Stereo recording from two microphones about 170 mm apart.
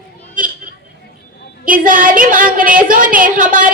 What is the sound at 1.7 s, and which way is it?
A woman's voice, 55° right (ahead or behind).